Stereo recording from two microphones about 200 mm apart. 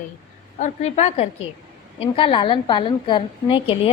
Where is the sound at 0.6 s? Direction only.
35° left (ahead or behind).